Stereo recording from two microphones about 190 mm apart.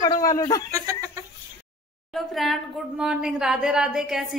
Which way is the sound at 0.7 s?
15° right (ahead or behind).